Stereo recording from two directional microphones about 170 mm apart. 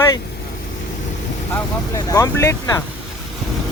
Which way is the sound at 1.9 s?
20° left (ahead or behind).